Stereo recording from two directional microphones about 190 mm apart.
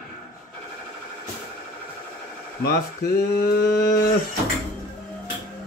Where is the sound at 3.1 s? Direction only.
55° left (ahead or behind).